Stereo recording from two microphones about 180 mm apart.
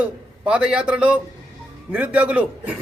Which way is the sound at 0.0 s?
5° right (ahead or behind).